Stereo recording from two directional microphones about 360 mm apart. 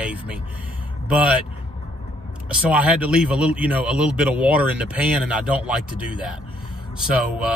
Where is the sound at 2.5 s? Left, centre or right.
Centre.